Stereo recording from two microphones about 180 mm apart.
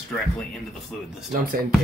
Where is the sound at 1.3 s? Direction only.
55° right (ahead or behind).